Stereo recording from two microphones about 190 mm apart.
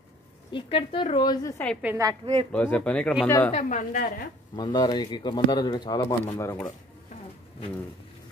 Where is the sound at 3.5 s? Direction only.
40° left (ahead or behind).